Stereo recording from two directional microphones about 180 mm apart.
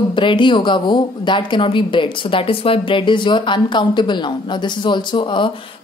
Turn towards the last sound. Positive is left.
turn(degrees=30)  # may be behind; listen again after turning